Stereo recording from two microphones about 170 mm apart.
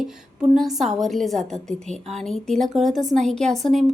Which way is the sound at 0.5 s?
Centre (ahead or behind).